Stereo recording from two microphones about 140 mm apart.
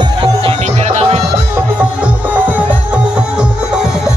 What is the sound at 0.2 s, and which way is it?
Music, 40° right (ahead or behind).